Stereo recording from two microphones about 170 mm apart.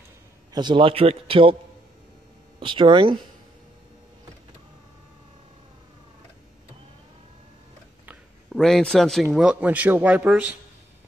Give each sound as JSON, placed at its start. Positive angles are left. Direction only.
{"t": 0.5, "sound": "a man's voice", "side_deg": -25}
{"t": 2.6, "sound": "speech", "side_deg": -30}
{"t": 8.1, "sound": "a man's voice", "side_deg": 0}